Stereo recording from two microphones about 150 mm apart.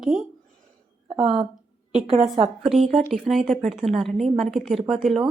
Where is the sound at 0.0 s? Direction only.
5° right (ahead or behind).